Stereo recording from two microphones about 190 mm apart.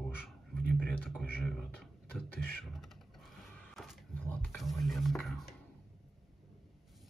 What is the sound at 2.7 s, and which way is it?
Typing, centre (ahead or behind).